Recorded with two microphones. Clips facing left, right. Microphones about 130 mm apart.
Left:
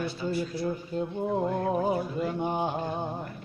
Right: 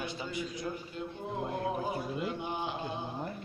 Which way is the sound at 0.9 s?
40° left (ahead or behind).